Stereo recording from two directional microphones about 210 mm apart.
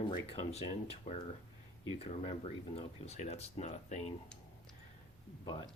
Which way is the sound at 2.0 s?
30° left (ahead or behind).